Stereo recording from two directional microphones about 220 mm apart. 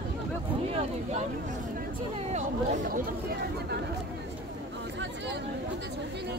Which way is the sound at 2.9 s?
45° right (ahead or behind).